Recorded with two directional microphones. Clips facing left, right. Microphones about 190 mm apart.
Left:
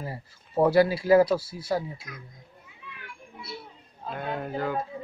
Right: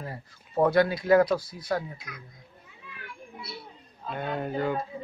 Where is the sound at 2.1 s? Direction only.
40° left (ahead or behind).